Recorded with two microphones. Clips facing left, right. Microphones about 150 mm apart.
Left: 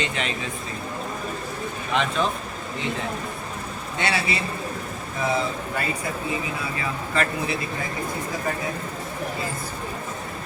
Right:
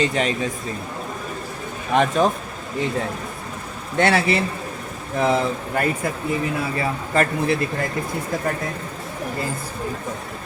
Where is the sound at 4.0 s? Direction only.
55° right (ahead or behind).